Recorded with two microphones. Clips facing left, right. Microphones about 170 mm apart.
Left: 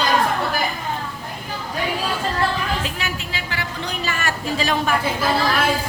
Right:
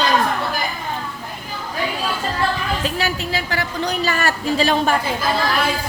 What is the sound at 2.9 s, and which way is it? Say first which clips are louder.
A man's voice: right 6 dB; 35° right (ahead or behind).